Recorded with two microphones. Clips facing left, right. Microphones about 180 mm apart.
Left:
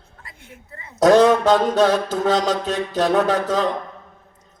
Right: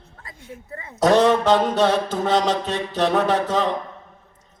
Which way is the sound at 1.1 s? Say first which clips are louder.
Left 3 dB; 45° left (ahead or behind).